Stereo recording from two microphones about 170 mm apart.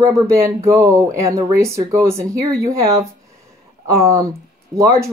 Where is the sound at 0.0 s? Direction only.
15° right (ahead or behind).